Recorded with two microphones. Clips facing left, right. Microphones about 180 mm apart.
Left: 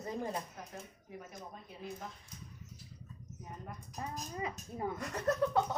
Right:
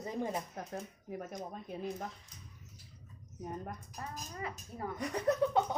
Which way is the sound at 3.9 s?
20° left (ahead or behind).